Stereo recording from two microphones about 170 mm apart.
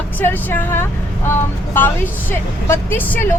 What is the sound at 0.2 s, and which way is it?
A woman's voice, 10° left (ahead or behind).